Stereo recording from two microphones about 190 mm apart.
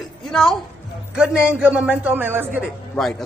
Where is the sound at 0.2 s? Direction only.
Centre (ahead or behind).